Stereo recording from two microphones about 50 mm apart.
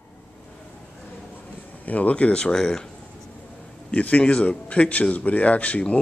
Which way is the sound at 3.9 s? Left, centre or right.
Left.